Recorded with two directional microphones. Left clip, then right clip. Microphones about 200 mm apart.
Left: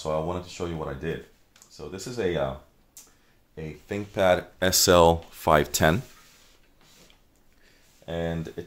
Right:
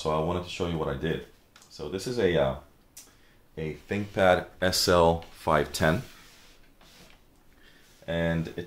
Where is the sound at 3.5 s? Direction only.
30° left (ahead or behind).